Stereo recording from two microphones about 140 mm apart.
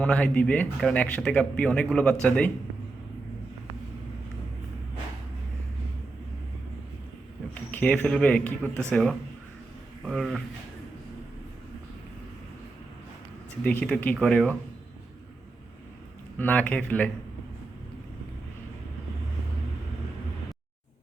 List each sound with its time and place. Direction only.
0.0 s speech: 10° left (ahead or behind)
7.7 s speech: 10° left (ahead or behind)
13.7 s speech: 10° left (ahead or behind)
16.4 s speech: 10° left (ahead or behind)